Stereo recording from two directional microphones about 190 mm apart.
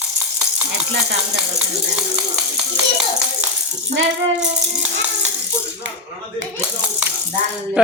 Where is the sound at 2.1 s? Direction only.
5° right (ahead or behind).